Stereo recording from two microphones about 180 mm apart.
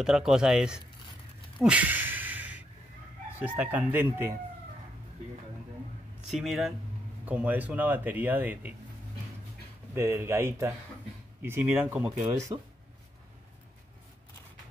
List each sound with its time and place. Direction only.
0.0 s speech: 5° right (ahead or behind)
1.6 s a sound: 10° right (ahead or behind)
3.3 s speech: 10° right (ahead or behind)
6.3 s speech: centre (ahead or behind)
9.9 s speech: 15° right (ahead or behind)
12.5 s speech: 30° right (ahead or behind)